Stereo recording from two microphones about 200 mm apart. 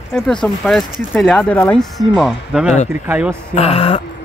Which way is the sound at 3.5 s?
30° left (ahead or behind).